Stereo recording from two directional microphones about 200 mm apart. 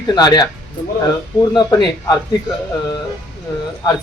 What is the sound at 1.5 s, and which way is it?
Speech, 20° left (ahead or behind).